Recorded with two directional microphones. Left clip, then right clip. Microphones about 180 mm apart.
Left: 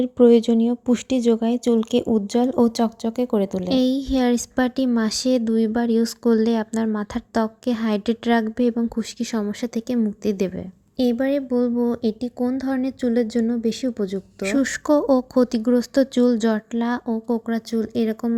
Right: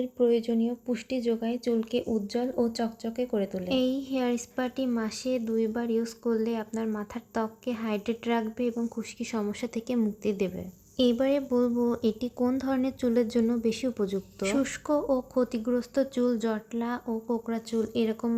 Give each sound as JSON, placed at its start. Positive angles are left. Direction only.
{"t": 0.0, "sound": "a woman's voice", "side_deg": 45}